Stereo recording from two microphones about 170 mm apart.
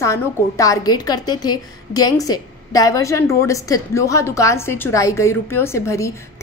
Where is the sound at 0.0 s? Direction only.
15° left (ahead or behind).